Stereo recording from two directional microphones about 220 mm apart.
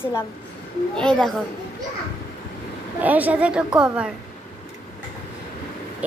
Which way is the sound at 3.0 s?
5° right (ahead or behind).